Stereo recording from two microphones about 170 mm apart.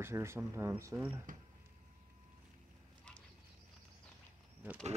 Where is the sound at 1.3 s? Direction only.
50° right (ahead or behind).